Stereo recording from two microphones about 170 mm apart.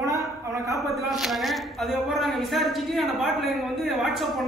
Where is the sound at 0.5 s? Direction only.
20° right (ahead or behind).